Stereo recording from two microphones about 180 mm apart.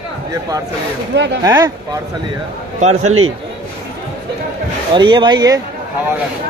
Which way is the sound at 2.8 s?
40° right (ahead or behind).